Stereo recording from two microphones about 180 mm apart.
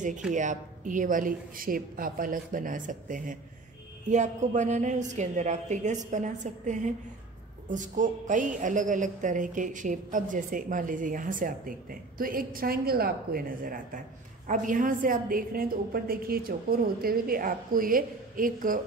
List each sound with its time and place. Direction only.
0.3 s a woman's voice: 45° right (ahead or behind)